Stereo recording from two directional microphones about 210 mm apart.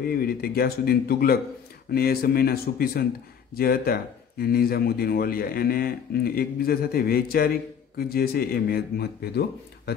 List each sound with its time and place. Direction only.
0.0 s speech: 45° left (ahead or behind)